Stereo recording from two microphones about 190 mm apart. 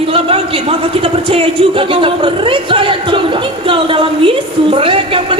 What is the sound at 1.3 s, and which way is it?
A woman's voice, 30° right (ahead or behind).